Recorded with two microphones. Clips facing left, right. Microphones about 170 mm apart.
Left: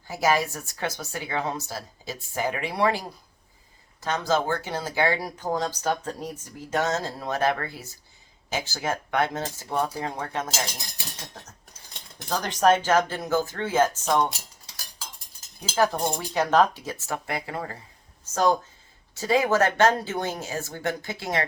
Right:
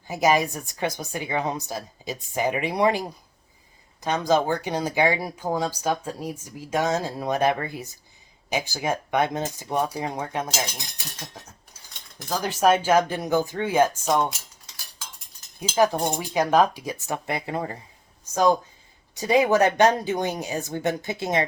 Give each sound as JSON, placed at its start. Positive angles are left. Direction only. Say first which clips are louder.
{"t": 0.1, "sound": "a woman's voice", "louder": "right 3 dB", "side_deg": -20}
{"t": 4.0, "sound": "speech", "louder": "right 3 dB", "side_deg": -15}
{"t": 12.3, "sound": "speech", "louder": "even", "side_deg": -5}
{"t": 15.7, "sound": "speech", "louder": "right 2 dB", "side_deg": -15}
{"t": 19.1, "sound": "speech", "louder": "right 3 dB", "side_deg": -15}